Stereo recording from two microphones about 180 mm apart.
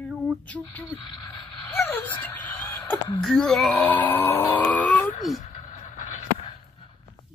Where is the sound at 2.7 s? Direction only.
20° left (ahead or behind).